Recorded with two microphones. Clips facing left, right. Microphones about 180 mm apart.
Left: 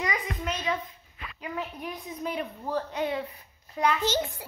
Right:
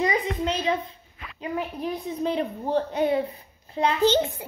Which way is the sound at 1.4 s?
30° right (ahead or behind).